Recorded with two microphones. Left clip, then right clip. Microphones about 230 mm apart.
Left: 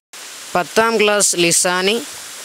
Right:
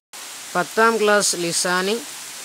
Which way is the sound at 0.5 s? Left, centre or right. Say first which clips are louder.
Left 3 dB; left.